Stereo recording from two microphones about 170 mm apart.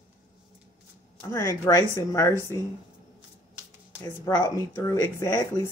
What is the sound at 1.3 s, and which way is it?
Speech, 20° left (ahead or behind).